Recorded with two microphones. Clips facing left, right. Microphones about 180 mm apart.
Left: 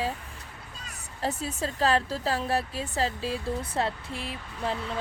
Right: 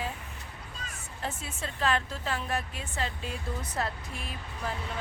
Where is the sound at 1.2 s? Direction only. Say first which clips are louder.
Left 7 dB; 40° left (ahead or behind).